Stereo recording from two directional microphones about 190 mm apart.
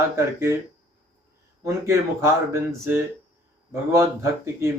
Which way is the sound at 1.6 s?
15° right (ahead or behind).